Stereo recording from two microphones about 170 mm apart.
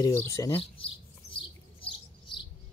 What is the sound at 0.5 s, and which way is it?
Bird, 35° left (ahead or behind).